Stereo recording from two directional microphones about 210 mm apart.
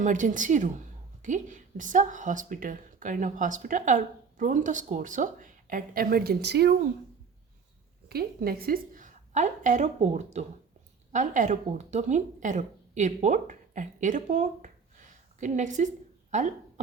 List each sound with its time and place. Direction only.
0.0 s speech: 40° right (ahead or behind)
8.0 s a woman's voice: 45° right (ahead or behind)
16.3 s cough: 35° right (ahead or behind)